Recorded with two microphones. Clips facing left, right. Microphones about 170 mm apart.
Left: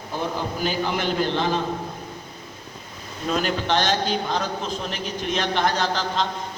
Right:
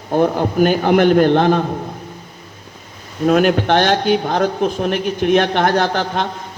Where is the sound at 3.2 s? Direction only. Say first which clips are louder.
Right 11 dB; 60° right (ahead or behind).